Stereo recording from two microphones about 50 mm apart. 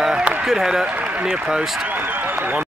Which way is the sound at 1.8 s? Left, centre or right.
Right.